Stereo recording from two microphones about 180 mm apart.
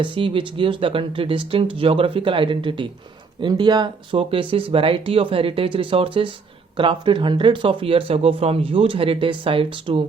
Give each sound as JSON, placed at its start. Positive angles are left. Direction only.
{"t": 0.0, "sound": "speech", "side_deg": -30}